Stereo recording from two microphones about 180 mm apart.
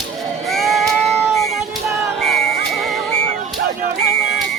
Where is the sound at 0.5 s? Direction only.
Centre (ahead or behind).